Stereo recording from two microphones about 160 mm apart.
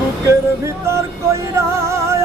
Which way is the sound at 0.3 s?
20° right (ahead or behind).